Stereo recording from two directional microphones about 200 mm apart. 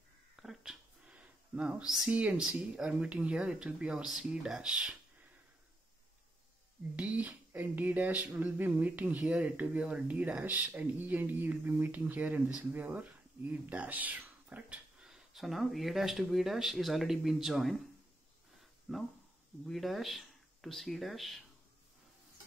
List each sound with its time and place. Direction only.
0.4 s speech: centre (ahead or behind)
7.0 s a sound: 5° right (ahead or behind)
18.9 s speech: centre (ahead or behind)